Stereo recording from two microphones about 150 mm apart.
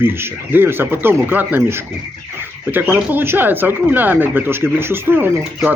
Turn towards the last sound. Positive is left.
turn(degrees=-15)  # may be behind; listen again after turning